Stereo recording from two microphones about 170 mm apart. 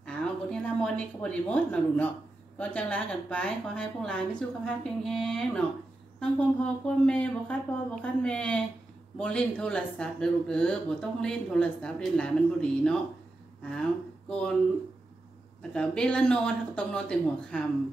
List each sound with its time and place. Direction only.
0.0 s a sound: 5° left (ahead or behind)
2.6 s speech: 10° left (ahead or behind)
15.7 s speech: 5° left (ahead or behind)